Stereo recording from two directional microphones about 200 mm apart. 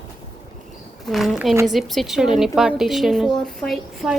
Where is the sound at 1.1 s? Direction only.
Centre (ahead or behind).